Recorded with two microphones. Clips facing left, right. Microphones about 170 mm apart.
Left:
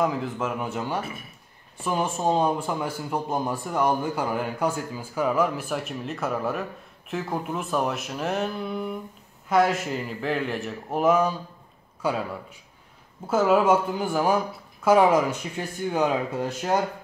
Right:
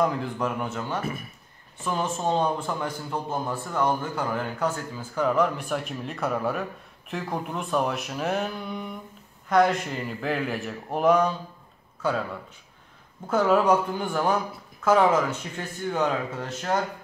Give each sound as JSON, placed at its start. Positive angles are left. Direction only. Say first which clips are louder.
{"t": 0.0, "sound": "a man's voice", "louder": "even", "side_deg": 5}